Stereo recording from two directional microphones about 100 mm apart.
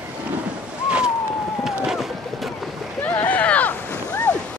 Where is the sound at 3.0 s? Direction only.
15° left (ahead or behind).